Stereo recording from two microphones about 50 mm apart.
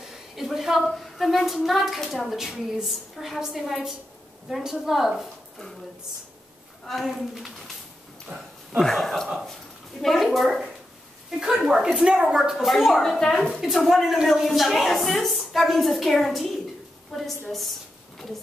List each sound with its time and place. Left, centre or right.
0.4 s a woman's voice: centre
6.9 s a woman's voice: centre
8.3 s speech: right
8.7 s a woman's voice: centre
11.2 s a woman's voice: centre
13.2 s a woman's voice: centre
13.6 s a woman's voice: centre